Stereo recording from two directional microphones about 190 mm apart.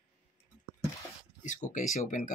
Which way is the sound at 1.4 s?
40° left (ahead or behind).